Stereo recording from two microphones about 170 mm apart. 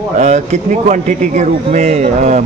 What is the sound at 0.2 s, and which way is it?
A man's voice, 45° right (ahead or behind).